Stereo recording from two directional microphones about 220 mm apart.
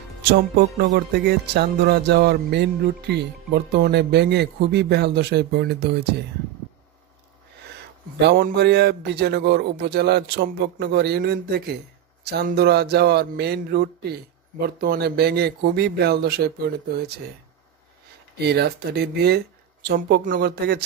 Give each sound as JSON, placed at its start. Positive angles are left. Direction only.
{"t": 0.9, "sound": "music", "side_deg": -50}
{"t": 8.2, "sound": "music", "side_deg": -50}
{"t": 18.4, "sound": "music", "side_deg": -45}